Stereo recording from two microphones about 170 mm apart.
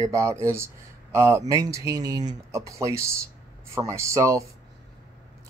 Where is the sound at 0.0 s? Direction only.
15° right (ahead or behind).